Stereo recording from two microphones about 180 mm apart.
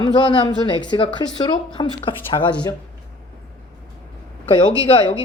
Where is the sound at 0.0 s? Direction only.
25° left (ahead or behind).